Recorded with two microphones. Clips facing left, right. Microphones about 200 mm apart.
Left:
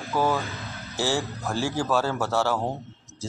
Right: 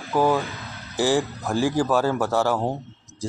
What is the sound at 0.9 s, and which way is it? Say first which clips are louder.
Speech: right 5 dB; 15° right (ahead or behind).